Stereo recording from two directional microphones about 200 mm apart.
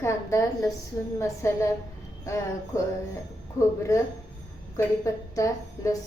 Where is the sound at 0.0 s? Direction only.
15° left (ahead or behind).